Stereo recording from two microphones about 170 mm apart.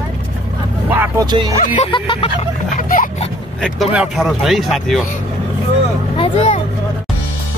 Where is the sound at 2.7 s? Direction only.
50° left (ahead or behind).